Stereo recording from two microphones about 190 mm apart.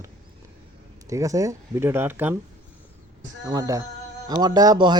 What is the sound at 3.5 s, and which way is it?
Speech, 20° right (ahead or behind).